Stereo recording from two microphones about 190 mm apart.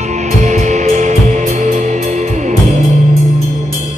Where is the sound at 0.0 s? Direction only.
40° right (ahead or behind).